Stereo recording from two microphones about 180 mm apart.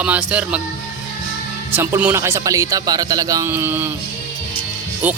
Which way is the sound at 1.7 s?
15° right (ahead or behind).